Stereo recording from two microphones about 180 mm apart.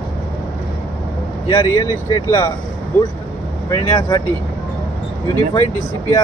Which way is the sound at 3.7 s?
20° left (ahead or behind).